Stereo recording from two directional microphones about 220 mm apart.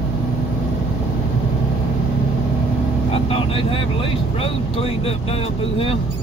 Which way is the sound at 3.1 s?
25° left (ahead or behind).